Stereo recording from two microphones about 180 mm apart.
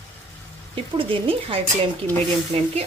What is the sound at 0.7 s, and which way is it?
Speech, 30° right (ahead or behind).